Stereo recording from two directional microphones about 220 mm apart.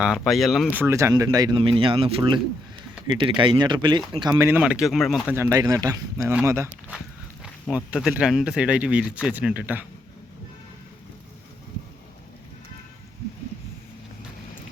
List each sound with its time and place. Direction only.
0.0 s speech: centre (ahead or behind)
5.3 s speech: 10° right (ahead or behind)